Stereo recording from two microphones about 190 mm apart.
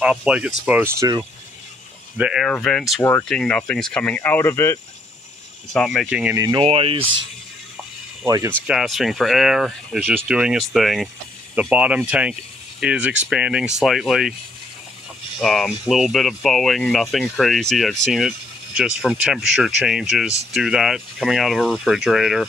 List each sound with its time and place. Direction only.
0.0 s speech: 5° right (ahead or behind)
2.1 s speech: 5° right (ahead or behind)
3.0 s speech: 15° left (ahead or behind)
5.7 s speech: centre (ahead or behind)
6.3 s speech: 20° right (ahead or behind)
8.3 s speech: 15° right (ahead or behind)
8.6 s speech: centre (ahead or behind)
15.3 s speech: centre (ahead or behind)